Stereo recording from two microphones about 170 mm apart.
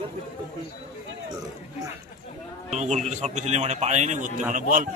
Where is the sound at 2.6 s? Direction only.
40° right (ahead or behind).